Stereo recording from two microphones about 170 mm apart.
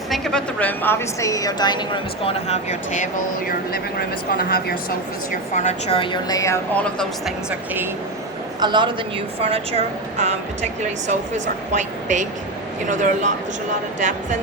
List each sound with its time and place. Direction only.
0.1 s a woman's voice: 5° left (ahead or behind); by 4.8 s 60° left (ahead or behind)
5.3 s a woman's voice: 50° left (ahead or behind)
5.9 s a woman's voice: 30° left (ahead or behind)
6.8 s speech: 5° left (ahead or behind)
8.6 s a woman's voice: 25° right (ahead or behind)
11.7 s speech: 45° right (ahead or behind)